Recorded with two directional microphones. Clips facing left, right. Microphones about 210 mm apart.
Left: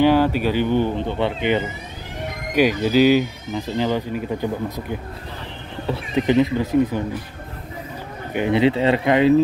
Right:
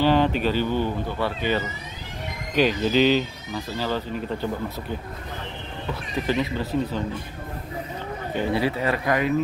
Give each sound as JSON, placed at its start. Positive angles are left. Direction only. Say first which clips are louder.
{"t": 0.0, "sound": "speech", "louder": "left 4 dB", "side_deg": 10}
{"t": 2.5, "sound": "speech", "louder": "left 3 dB", "side_deg": 10}
{"t": 6.1, "sound": "speech", "louder": "left 8 dB", "side_deg": 20}
{"t": 8.3, "sound": "speech", "louder": "left 6 dB", "side_deg": 15}